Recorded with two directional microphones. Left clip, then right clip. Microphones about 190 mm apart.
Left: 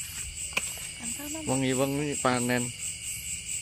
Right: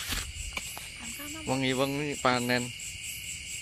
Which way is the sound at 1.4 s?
5° right (ahead or behind).